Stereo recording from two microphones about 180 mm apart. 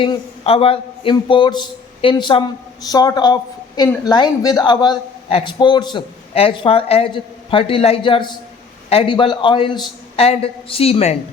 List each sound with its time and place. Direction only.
0.0 s a man's voice: 30° left (ahead or behind)